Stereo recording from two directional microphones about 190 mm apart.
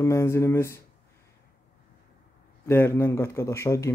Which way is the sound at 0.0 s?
15° left (ahead or behind).